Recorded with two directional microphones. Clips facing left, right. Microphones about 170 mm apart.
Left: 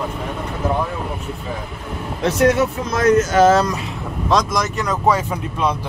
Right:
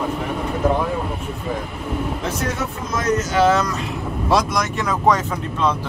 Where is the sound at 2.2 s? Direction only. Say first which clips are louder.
Left 9 dB; 70° left (ahead or behind); by 3.6 s 45° left (ahead or behind).